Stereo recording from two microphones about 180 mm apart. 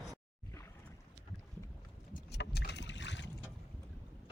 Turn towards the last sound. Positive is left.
turn(degrees=90)